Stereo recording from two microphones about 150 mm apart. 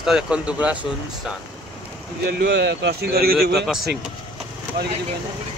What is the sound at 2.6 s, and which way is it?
Speech, 90° right.